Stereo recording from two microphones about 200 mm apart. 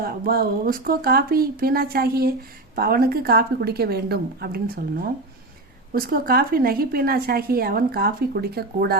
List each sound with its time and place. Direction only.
0.0 s a woman's voice: 50° right (ahead or behind)
5.9 s a woman's voice: 45° right (ahead or behind)